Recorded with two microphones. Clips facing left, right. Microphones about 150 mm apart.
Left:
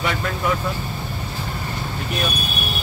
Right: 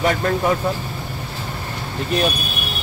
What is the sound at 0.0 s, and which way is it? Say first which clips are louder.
Speech: right 5 dB; 40° right (ahead or behind).